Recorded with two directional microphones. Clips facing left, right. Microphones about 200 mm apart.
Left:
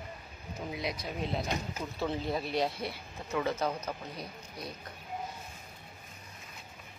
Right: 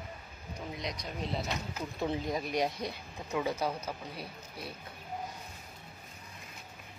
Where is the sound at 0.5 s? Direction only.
5° left (ahead or behind).